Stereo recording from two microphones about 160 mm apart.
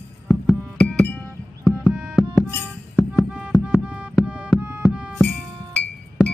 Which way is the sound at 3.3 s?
5° right (ahead or behind).